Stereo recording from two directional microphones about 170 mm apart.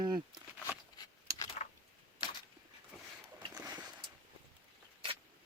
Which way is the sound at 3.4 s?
25° right (ahead or behind).